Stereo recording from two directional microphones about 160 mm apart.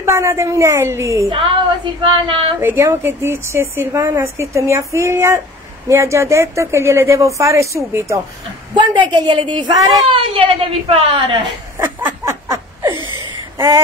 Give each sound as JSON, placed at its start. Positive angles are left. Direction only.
{"t": 0.0, "sound": "a woman's voice", "side_deg": -15}
{"t": 2.0, "sound": "a woman's voice", "side_deg": -35}
{"t": 2.6, "sound": "a woman's voice", "side_deg": -15}
{"t": 8.7, "sound": "a woman's voice", "side_deg": -30}
{"t": 11.7, "sound": "laughter", "side_deg": -15}